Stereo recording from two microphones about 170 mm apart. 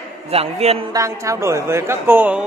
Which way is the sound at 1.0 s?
15° right (ahead or behind).